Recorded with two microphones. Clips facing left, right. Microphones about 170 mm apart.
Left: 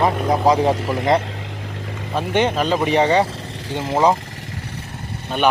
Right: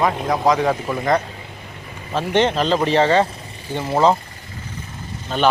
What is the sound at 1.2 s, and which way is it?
Vehicle, 90° left.